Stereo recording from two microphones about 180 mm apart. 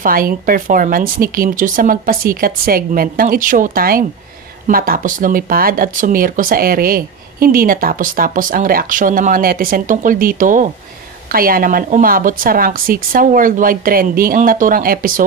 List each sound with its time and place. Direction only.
0.0 s speech: 55° right (ahead or behind)